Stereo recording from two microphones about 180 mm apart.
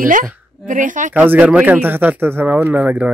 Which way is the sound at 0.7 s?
45° right (ahead or behind).